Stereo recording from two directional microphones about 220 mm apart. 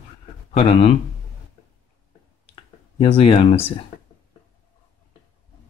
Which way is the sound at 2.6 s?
25° left (ahead or behind).